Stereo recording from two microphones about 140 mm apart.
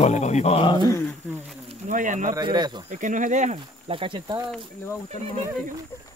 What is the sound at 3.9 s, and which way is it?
Speech, 35° right (ahead or behind).